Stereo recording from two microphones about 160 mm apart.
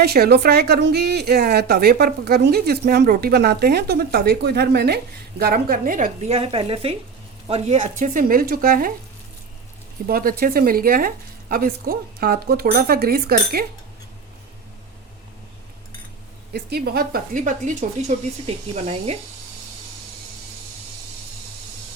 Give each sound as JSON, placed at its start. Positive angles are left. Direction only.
{"t": 0.0, "sound": "speech", "side_deg": -80}
{"t": 5.4, "sound": "speech", "side_deg": -70}
{"t": 6.2, "sound": "speech", "side_deg": -40}
{"t": 10.1, "sound": "a woman's voice", "side_deg": -65}
{"t": 16.5, "sound": "a woman's voice", "side_deg": -85}